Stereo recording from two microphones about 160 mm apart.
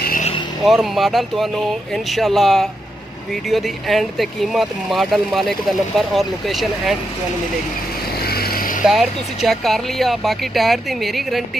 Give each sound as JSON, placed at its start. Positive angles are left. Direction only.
{"t": 0.7, "sound": "speech", "side_deg": 0}
{"t": 8.3, "sound": "vehicle", "side_deg": 70}
{"t": 8.8, "sound": "speech", "side_deg": 0}